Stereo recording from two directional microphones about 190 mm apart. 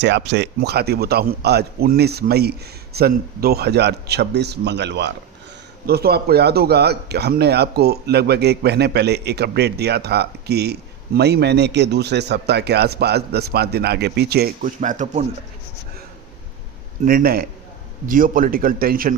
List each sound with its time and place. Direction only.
0.0 s speech: 65° right (ahead or behind)
14.8 s speech: 40° right (ahead or behind)
17.1 s a man's voice: 50° right (ahead or behind)